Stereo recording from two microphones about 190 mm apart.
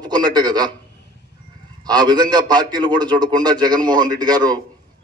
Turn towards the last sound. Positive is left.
turn(degrees=-20)  # may be behind; listen again after turning